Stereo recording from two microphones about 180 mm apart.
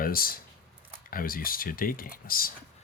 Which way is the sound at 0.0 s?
55° left (ahead or behind).